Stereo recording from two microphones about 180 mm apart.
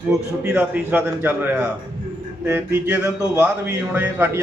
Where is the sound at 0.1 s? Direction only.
10° right (ahead or behind).